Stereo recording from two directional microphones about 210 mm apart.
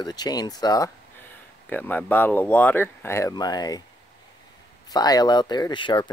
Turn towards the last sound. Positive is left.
turn(degrees=20)  # may be behind; listen again after turning